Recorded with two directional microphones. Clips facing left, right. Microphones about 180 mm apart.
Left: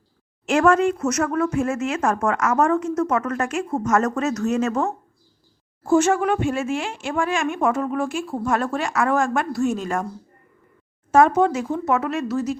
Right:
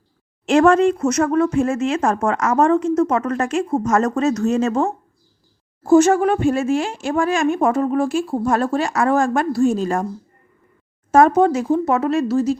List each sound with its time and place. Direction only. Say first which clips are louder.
0.4 s speech: right 4 dB; 30° right (ahead or behind)
11.1 s speech: right 3 dB; 40° right (ahead or behind)